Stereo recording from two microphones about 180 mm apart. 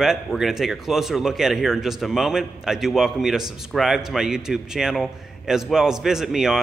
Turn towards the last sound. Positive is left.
turn(degrees=0)  # may be behind; listen again after turning